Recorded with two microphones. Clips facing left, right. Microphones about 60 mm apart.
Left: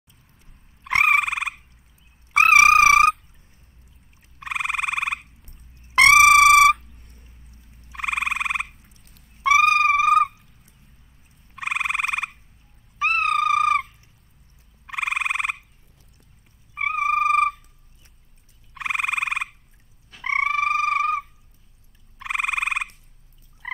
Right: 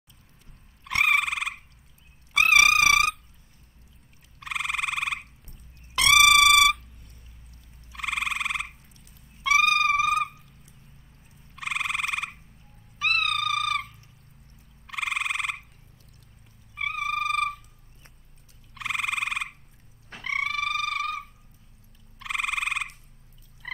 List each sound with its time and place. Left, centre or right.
2.3 s trumpet: left
4.4 s frog: left
5.9 s trumpet: left
7.9 s frog: left
9.4 s a sound: left
11.5 s frog: left
13.0 s a sound: left
14.9 s frog: left
16.7 s cat: left
17.1 s a sound: left
18.8 s frog: left
22.2 s frog: left